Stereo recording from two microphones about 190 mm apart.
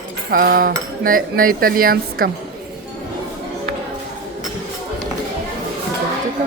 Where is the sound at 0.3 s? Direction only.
50° right (ahead or behind).